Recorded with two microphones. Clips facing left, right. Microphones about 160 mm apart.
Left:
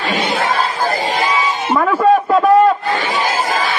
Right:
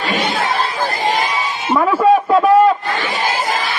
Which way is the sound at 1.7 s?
Centre (ahead or behind).